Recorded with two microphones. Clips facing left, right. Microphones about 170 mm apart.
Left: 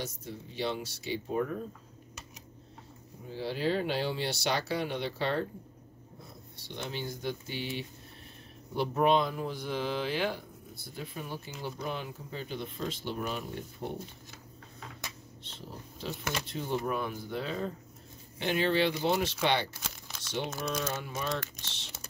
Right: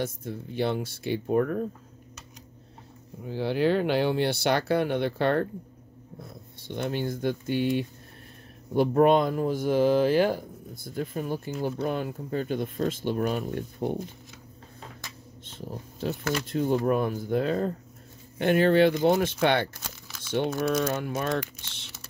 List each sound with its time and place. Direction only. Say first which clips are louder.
0.0 s speech: right 7 dB; 55° right (ahead or behind)
3.3 s speech: right 7 dB; 60° right (ahead or behind)
6.6 s speech: right 8 dB; 50° right (ahead or behind)
15.4 s speech: right 7 dB; 50° right (ahead or behind)